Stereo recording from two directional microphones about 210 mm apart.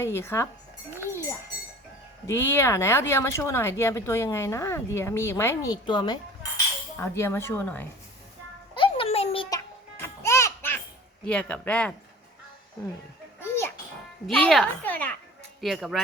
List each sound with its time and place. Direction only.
0.0 s speech: 10° left (ahead or behind)
2.2 s speech: 10° left (ahead or behind)
8.7 s music: 25° left (ahead or behind)
10.0 s music: 15° left (ahead or behind)
11.3 s speech: 5° left (ahead or behind)
13.4 s music: 10° left (ahead or behind)
14.3 s speech: centre (ahead or behind)